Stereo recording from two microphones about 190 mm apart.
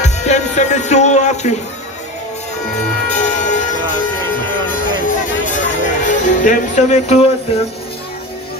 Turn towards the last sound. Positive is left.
turn(degrees=35)  # may be behind; listen again after turning